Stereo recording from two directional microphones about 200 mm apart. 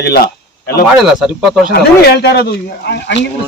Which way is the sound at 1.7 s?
50° left (ahead or behind).